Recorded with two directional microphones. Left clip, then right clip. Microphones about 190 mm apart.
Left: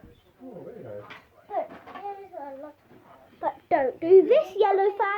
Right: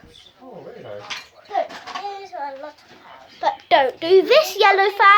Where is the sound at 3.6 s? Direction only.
10° left (ahead or behind).